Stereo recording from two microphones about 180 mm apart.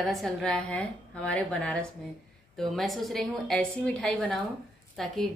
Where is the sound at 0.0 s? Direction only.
Centre (ahead or behind).